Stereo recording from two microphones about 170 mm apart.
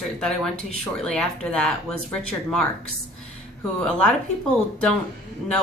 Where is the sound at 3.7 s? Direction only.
5° left (ahead or behind).